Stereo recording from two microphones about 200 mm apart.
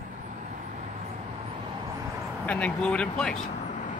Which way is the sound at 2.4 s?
5° left (ahead or behind).